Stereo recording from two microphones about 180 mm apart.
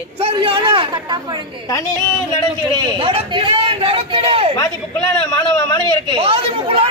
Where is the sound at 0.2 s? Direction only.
30° right (ahead or behind).